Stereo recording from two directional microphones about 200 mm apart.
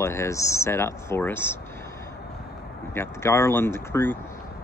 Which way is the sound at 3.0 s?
15° left (ahead or behind).